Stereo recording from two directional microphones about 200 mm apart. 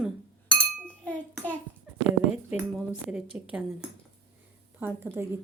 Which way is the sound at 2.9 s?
5° right (ahead or behind).